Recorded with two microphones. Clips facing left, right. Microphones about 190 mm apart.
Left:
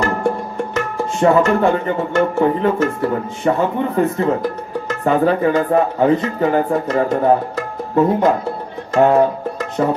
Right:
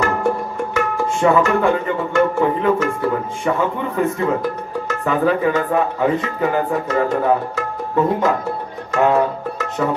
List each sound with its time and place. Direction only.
1.2 s music: 35° left (ahead or behind)